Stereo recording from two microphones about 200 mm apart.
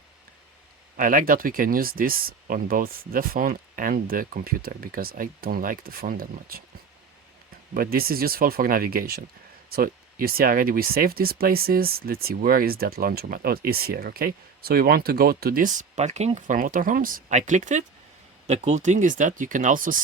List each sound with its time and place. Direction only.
0.9 s speech: 45° right (ahead or behind)
7.7 s speech: 50° right (ahead or behind)